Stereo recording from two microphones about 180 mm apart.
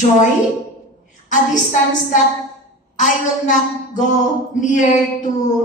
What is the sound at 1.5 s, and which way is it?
A woman's voice, 45° left (ahead or behind).